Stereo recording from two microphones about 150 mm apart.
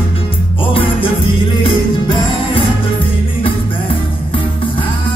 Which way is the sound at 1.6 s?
35° left (ahead or behind).